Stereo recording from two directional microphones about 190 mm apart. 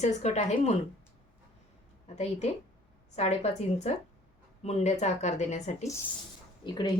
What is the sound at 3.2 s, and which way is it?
Speech, 35° left (ahead or behind).